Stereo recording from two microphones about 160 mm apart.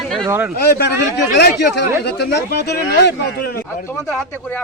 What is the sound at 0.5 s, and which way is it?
Speech, 80° left.